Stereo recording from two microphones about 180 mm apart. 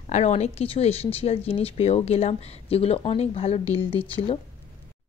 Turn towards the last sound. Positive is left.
turn(degrees=30)  # may be behind; listen again after turning